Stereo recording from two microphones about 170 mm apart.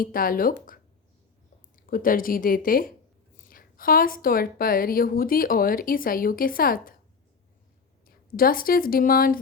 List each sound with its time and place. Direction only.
0.0 s a woman's voice: 55° left (ahead or behind)
8.0 s a woman's voice: 60° left (ahead or behind)